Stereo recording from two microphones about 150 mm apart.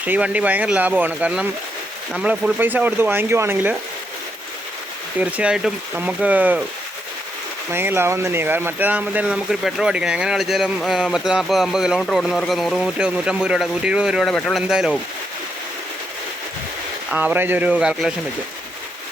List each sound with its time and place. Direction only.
0.0 s speech: 10° right (ahead or behind)
5.2 s speech: 5° right (ahead or behind)
7.7 s speech: 15° right (ahead or behind)
17.1 s speech: 10° right (ahead or behind)